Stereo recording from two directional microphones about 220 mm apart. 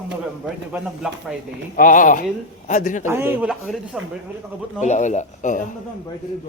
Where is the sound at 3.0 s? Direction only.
10° right (ahead or behind).